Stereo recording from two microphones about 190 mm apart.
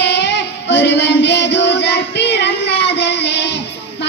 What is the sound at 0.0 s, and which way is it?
Child singing, 65° left (ahead or behind).